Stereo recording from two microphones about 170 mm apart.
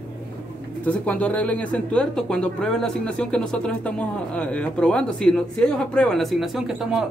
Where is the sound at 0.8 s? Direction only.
10° left (ahead or behind).